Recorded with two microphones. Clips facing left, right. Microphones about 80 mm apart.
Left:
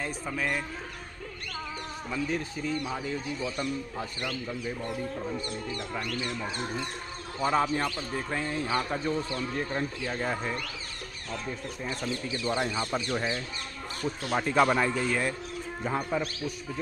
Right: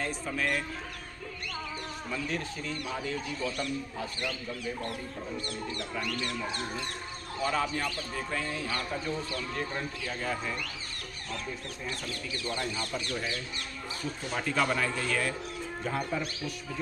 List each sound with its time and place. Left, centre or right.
0.0 s speech: centre
2.2 s speech: centre
7.4 s speech: left
11.8 s speech: left